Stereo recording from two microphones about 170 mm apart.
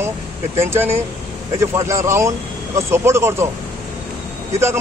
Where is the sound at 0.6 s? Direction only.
15° right (ahead or behind).